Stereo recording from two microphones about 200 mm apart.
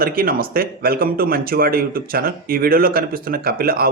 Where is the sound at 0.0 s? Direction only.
45° right (ahead or behind).